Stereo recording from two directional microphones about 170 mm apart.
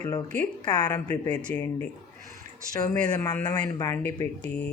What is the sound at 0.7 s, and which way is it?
Speech, 25° left (ahead or behind).